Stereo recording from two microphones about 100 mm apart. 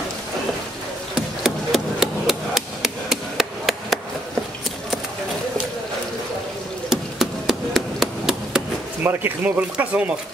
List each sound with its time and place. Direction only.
1.1 s hammer: 5° right (ahead or behind)
6.9 s hammer: 5° right (ahead or behind)
9.0 s speech: 20° right (ahead or behind)